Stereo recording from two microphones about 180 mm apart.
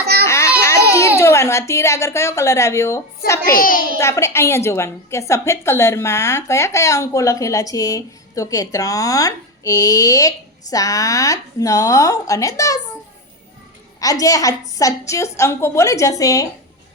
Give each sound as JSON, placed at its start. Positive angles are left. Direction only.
{"t": 0.3, "sound": "baby cry", "side_deg": 15}
{"t": 0.9, "sound": "speech", "side_deg": 15}
{"t": 3.5, "sound": "a child's voice", "side_deg": 50}
{"t": 3.9, "sound": "a woman's voice", "side_deg": 15}
{"t": 14.0, "sound": "a woman's voice", "side_deg": 20}